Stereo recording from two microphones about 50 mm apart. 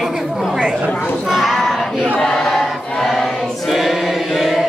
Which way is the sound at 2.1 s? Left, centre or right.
Centre.